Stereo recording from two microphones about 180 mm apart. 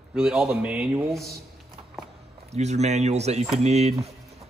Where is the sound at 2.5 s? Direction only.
40° right (ahead or behind).